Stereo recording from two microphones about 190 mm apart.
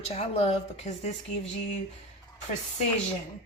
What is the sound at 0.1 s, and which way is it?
Speech, 35° left (ahead or behind).